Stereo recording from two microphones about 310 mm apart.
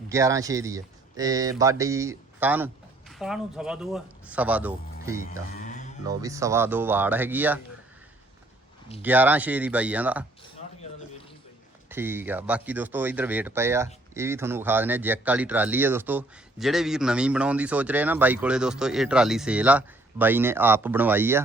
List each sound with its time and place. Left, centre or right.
0.1 s speech: centre
5.5 s music: left
6.1 s speech: centre
9.0 s speech: centre
11.9 s speech: centre